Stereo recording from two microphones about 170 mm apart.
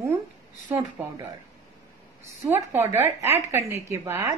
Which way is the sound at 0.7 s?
15° right (ahead or behind).